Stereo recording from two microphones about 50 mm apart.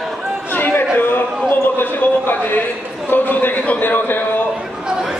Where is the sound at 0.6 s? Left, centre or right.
Left.